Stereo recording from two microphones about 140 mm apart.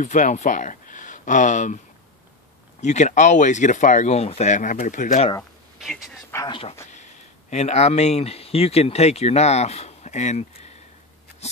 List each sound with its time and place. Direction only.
0.0 s speech: 65° left (ahead or behind)
2.8 s speech: 55° left (ahead or behind)
6.5 s speech: 40° left (ahead or behind)
6.9 s speech: 55° left (ahead or behind)